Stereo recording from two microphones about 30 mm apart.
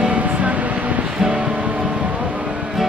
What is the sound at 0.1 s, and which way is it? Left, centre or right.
Music, right.